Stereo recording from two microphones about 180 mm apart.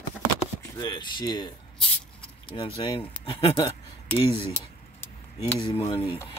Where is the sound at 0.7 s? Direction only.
25° left (ahead or behind).